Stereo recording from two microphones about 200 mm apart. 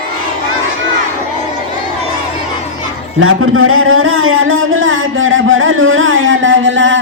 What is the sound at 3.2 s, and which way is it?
Speech, 90° right.